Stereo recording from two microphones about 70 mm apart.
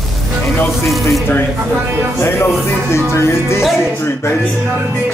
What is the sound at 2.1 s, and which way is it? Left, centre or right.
Music, left.